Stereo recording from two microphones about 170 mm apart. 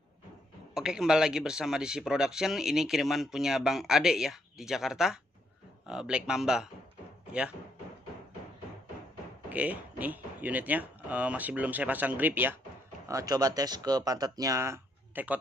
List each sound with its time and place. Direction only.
0.7 s a man's voice: 5° right (ahead or behind)
9.5 s speech: 10° right (ahead or behind)
13.1 s speech: 20° right (ahead or behind)